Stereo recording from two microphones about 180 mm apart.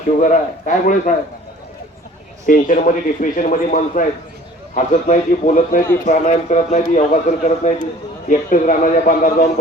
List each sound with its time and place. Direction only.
0.2 s a man's voice: 45° left (ahead or behind)
2.5 s a man's voice: 45° left (ahead or behind)